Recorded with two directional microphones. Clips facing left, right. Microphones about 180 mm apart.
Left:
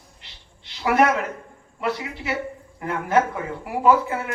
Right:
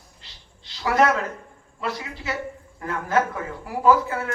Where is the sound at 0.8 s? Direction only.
20° left (ahead or behind).